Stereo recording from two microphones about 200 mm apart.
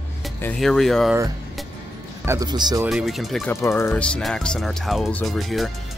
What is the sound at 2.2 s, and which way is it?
Speech, 20° right (ahead or behind).